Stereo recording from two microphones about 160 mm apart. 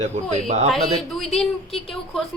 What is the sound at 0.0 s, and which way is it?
Speech, 45° right (ahead or behind).